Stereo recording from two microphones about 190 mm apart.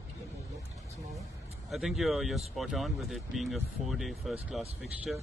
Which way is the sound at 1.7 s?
Centre (ahead or behind).